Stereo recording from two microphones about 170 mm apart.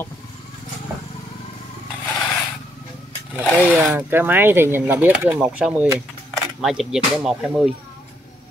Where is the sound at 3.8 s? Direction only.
10° right (ahead or behind).